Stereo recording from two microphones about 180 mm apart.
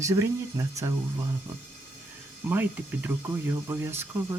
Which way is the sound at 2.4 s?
10° right (ahead or behind).